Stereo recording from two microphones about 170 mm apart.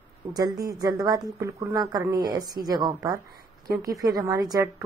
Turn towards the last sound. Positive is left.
turn(degrees=-20)  # may be behind; listen again after turning